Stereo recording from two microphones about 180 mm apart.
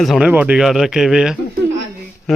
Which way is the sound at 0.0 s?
5° right (ahead or behind).